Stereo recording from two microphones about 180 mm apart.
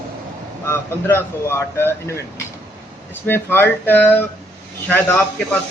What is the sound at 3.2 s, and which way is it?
Speech, 10° left (ahead or behind).